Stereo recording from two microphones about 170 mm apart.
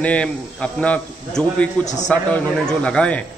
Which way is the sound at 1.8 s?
45° left (ahead or behind).